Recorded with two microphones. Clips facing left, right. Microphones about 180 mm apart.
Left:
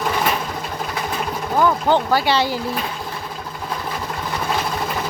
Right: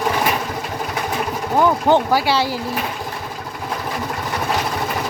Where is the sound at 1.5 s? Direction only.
20° right (ahead or behind).